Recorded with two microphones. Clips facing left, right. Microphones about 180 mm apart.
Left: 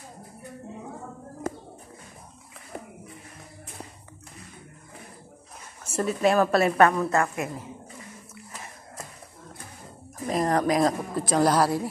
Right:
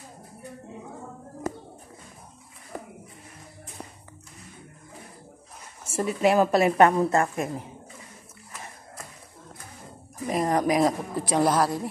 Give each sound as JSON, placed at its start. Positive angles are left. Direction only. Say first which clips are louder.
{"t": 5.9, "sound": "a woman's voice", "louder": "even", "side_deg": -15}
{"t": 7.0, "sound": "a woman's voice", "louder": "right 2 dB", "side_deg": -30}
{"t": 10.3, "sound": "speech", "louder": "even", "side_deg": -5}